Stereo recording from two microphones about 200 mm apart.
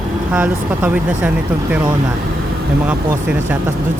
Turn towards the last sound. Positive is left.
turn(degrees=-5)  # may be behind; listen again after turning